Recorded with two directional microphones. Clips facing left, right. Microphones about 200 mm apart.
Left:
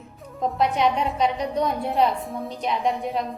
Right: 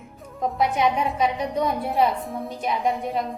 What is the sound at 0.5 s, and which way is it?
A woman's voice, centre (ahead or behind).